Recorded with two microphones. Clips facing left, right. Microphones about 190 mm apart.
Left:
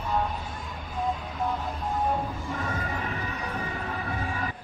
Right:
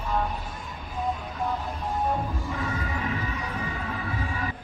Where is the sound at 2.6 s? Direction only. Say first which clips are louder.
Right 1 dB; 45° left (ahead or behind).